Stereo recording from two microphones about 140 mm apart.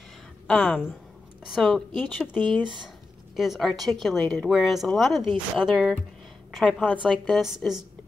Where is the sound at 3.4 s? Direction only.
Centre (ahead or behind).